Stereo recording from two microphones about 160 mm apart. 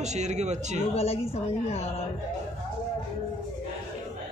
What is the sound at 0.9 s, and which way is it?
Speech, 40° left (ahead or behind).